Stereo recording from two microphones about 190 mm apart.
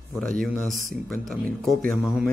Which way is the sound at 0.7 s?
45° right (ahead or behind).